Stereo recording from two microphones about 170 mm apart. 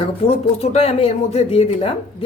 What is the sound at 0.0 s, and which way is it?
Speech, 35° left (ahead or behind).